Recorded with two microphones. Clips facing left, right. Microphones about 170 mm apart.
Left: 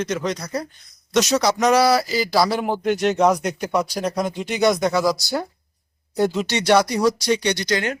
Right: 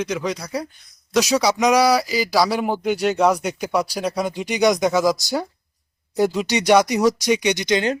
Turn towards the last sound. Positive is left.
turn(degrees=-15)  # may be behind; listen again after turning